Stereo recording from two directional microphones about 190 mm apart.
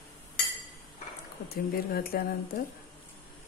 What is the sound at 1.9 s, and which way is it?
Speech, 50° left (ahead or behind).